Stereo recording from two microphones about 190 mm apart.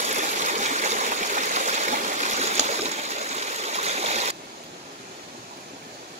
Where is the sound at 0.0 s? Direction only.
40° right (ahead or behind).